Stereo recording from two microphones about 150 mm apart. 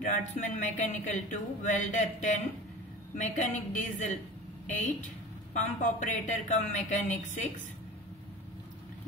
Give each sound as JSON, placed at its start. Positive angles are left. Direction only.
{"t": 0.0, "sound": "speech", "side_deg": 55}
{"t": 5.5, "sound": "speech", "side_deg": 55}